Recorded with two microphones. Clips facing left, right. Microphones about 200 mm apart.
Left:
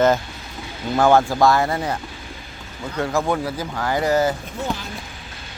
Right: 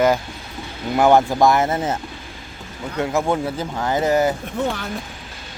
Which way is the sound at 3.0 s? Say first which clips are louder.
Right 1 dB; 20° right (ahead or behind).